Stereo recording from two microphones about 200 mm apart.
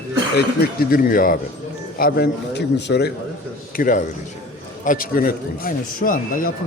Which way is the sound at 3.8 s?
40° left (ahead or behind).